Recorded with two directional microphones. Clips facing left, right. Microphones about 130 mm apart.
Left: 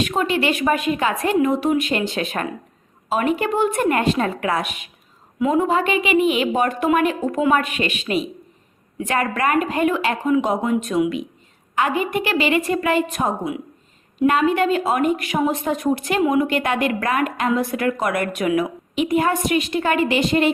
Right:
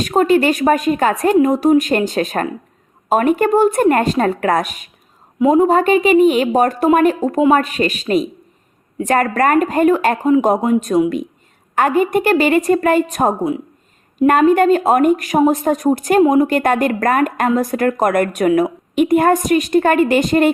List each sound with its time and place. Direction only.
0.0 s a woman's voice: 40° right (ahead or behind)